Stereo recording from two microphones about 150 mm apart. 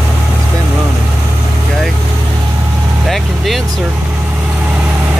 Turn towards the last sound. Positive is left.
turn(degrees=0)  # may be behind; listen again after turning